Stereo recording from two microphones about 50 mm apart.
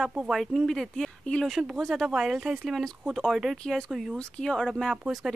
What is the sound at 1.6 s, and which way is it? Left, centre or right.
Speech, centre.